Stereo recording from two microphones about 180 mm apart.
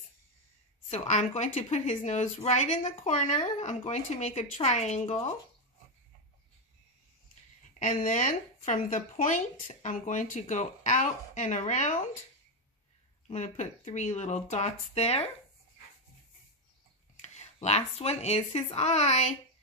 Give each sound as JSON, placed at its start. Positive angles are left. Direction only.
{"t": 0.8, "sound": "a woman's voice", "side_deg": 40}
{"t": 8.0, "sound": "speech", "side_deg": 45}
{"t": 13.3, "sound": "a woman's voice", "side_deg": 40}
{"t": 17.2, "sound": "speech", "side_deg": 40}